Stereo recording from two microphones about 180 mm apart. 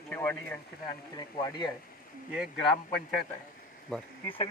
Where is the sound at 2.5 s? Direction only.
5° left (ahead or behind).